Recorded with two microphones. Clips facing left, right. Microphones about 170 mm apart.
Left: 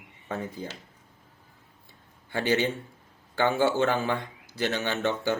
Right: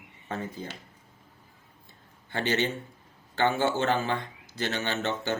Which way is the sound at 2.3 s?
15° left (ahead or behind).